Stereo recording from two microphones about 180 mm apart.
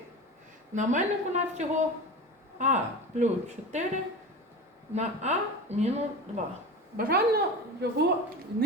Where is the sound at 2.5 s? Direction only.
40° right (ahead or behind).